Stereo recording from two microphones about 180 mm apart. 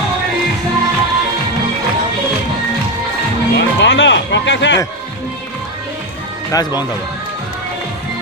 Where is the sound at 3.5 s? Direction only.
75° left (ahead or behind).